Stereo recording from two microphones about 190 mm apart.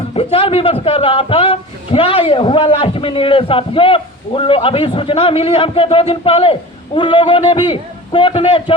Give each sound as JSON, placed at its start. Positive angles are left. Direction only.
{"t": 0.1, "sound": "speech", "side_deg": 30}